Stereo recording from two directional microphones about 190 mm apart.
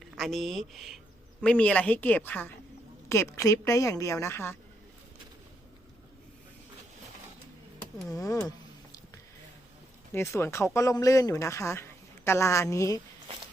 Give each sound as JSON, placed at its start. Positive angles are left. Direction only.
{"t": 0.2, "sound": "speech", "side_deg": 0}
{"t": 8.1, "sound": "a sound", "side_deg": 15}
{"t": 10.1, "sound": "speech", "side_deg": 15}